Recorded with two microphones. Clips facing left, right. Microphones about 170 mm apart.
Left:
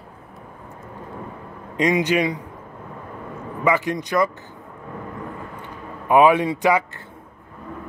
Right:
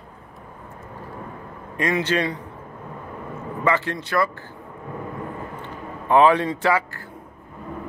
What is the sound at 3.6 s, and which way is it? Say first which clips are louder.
Speech: left 2 dB; 15° left (ahead or behind).